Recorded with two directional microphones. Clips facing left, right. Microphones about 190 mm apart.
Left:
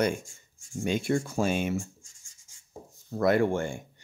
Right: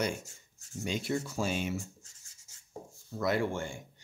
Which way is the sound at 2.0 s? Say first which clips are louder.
Right 1 dB; 10° left (ahead or behind).